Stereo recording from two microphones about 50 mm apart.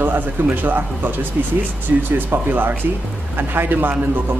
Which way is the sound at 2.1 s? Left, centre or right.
Right.